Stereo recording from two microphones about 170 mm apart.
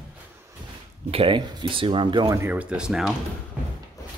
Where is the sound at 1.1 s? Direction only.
30° right (ahead or behind); by 3.2 s 5° right (ahead or behind).